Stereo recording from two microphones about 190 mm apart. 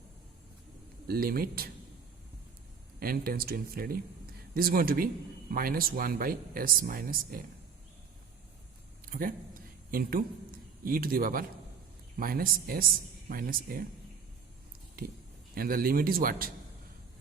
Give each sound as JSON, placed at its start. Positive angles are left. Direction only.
{"t": 1.0, "sound": "speech", "side_deg": -50}
{"t": 3.0, "sound": "speech", "side_deg": -50}
{"t": 9.0, "sound": "a man's voice", "side_deg": -45}
{"t": 15.0, "sound": "speech", "side_deg": -50}